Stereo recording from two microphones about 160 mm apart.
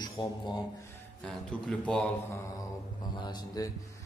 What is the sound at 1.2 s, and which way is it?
Speech, 5° left (ahead or behind).